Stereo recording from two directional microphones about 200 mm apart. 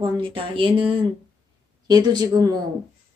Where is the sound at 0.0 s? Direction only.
25° right (ahead or behind).